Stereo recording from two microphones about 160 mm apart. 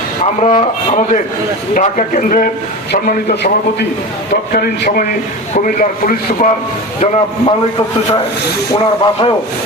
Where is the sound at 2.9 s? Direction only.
90° left.